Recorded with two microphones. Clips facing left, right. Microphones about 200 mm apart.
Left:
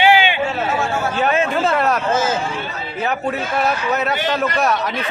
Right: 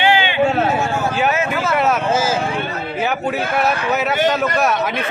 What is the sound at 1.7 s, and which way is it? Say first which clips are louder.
Speech: right 1 dB; centre (ahead or behind).